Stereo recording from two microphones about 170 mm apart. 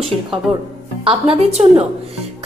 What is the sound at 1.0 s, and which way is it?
Speech, 35° right (ahead or behind).